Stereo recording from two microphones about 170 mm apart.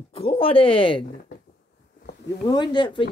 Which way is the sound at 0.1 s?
35° left (ahead or behind).